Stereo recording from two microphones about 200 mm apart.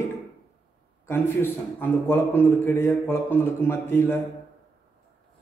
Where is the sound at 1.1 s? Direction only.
10° left (ahead or behind).